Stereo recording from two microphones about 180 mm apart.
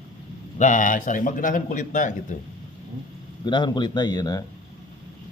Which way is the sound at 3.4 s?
25° left (ahead or behind).